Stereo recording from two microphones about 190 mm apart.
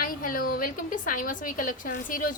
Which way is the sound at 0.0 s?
45° left (ahead or behind).